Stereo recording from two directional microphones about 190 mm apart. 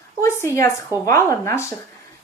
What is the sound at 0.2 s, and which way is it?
A woman's voice, 15° left (ahead or behind).